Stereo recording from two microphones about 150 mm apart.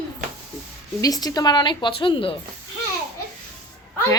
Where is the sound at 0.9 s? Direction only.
25° left (ahead or behind).